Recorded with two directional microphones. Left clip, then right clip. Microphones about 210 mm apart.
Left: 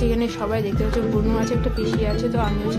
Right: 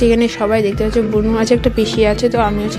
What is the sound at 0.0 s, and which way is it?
Speech, 35° right (ahead or behind).